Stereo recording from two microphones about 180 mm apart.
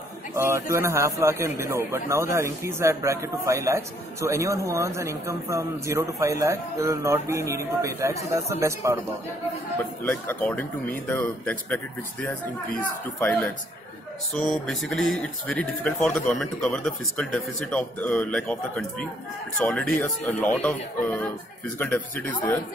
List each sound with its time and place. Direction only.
0.3 s a man's voice: 15° right (ahead or behind)
10.0 s a man's voice: 10° left (ahead or behind)